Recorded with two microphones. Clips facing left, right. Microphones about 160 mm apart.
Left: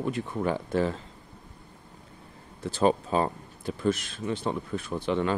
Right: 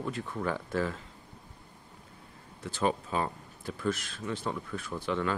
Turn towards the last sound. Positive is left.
turn(degrees=20)  # may be behind; listen again after turning